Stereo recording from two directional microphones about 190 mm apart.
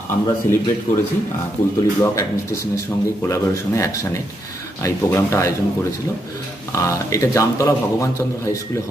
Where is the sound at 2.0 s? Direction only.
15° left (ahead or behind).